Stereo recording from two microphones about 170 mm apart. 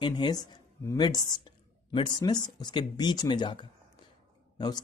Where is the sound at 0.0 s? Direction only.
25° left (ahead or behind).